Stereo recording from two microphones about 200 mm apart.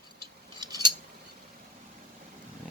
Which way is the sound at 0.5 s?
20° right (ahead or behind).